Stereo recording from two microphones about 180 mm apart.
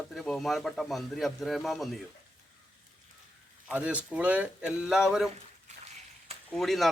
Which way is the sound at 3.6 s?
5° right (ahead or behind).